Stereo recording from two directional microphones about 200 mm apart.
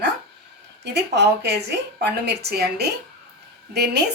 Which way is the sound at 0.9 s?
60° right (ahead or behind).